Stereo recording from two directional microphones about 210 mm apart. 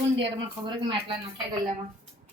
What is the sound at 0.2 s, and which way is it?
Speech, 25° right (ahead or behind).